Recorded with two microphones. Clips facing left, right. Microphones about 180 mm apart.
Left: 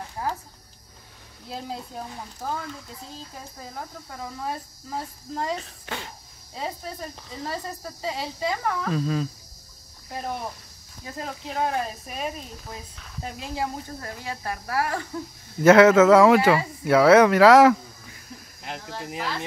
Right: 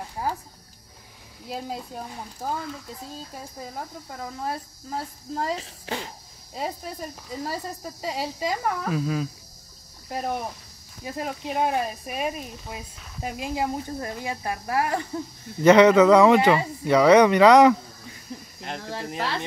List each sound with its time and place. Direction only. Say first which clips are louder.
0.2 s a sound: right 1 dB; 10° right (ahead or behind)
5.6 s a child's voice: right 3 dB; 30° right (ahead or behind)
7.2 s speech: right 1 dB; 10° right (ahead or behind)
11.1 s speech: right 4 dB; 15° right (ahead or behind)
15.6 s speech: even; 5° left (ahead or behind)